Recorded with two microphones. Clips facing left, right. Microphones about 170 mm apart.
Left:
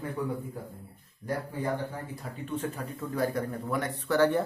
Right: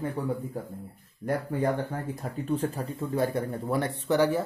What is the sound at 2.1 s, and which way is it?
Speech, 40° right (ahead or behind).